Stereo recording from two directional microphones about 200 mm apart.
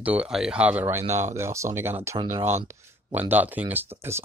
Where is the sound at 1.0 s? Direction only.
35° right (ahead or behind).